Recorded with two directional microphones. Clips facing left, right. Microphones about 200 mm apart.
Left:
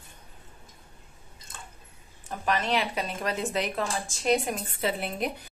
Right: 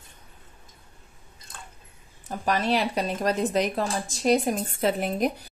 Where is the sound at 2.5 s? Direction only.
40° right (ahead or behind).